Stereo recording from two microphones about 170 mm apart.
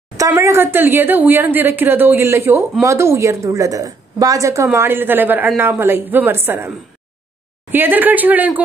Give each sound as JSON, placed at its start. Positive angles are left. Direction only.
{"t": 0.2, "sound": "a woman's voice", "side_deg": -15}
{"t": 7.7, "sound": "speech", "side_deg": -10}